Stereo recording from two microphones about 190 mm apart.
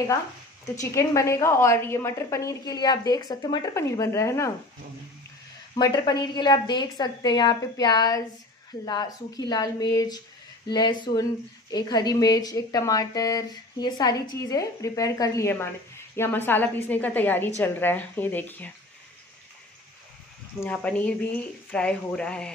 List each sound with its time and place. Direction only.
0.7 s a woman's voice: 15° left (ahead or behind)
5.8 s a woman's voice: 20° left (ahead or behind)
20.6 s speech: 5° left (ahead or behind)